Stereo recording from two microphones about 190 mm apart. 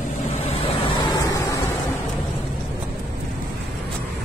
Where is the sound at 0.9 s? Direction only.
25° left (ahead or behind).